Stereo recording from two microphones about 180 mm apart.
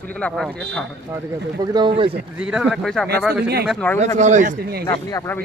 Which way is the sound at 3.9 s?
40° right (ahead or behind).